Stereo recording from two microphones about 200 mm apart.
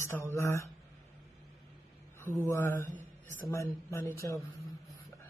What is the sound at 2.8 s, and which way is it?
Speech, 40° right (ahead or behind).